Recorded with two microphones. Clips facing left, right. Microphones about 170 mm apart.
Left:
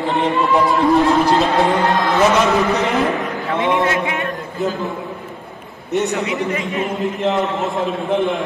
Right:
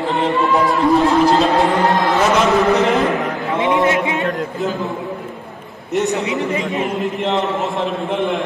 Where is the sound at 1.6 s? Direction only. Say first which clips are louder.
Right 1 dB; centre (ahead or behind).